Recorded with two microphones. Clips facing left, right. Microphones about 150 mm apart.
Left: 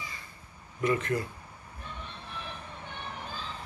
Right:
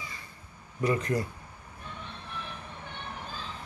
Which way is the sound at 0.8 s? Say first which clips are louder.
Even; 35° right (ahead or behind).